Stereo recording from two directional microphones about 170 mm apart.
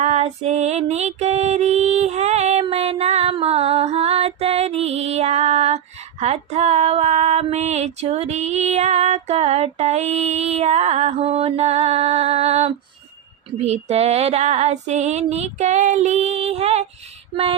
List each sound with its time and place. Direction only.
0.0 s female singing: 40° right (ahead or behind)